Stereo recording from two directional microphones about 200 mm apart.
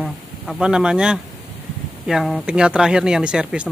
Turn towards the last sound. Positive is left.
turn(degrees=-5)  # may be behind; listen again after turning